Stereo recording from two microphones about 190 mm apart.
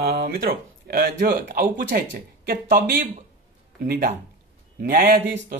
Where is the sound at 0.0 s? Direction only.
50° right (ahead or behind).